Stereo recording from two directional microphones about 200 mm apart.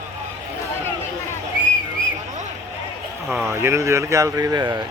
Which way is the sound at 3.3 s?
Centre (ahead or behind).